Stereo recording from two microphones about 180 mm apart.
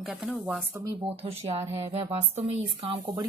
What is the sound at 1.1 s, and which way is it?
Speech, 35° right (ahead or behind).